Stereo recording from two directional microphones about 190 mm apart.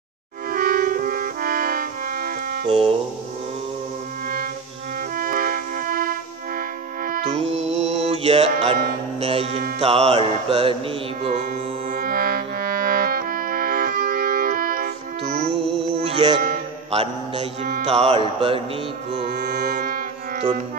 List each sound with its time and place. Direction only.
0.5 s music: 45° right (ahead or behind)
2.6 s speech: 30° right (ahead or behind)
5.1 s music: 45° right (ahead or behind)
7.1 s music: 35° right (ahead or behind)
11.9 s music: 50° right (ahead or behind)
16.0 s music: 35° right (ahead or behind)
16.9 s mantra: 30° right (ahead or behind)
17.8 s music: 30° right (ahead or behind)
19.7 s music: 45° right (ahead or behind)